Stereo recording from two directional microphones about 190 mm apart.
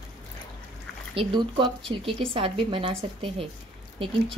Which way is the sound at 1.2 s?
25° right (ahead or behind).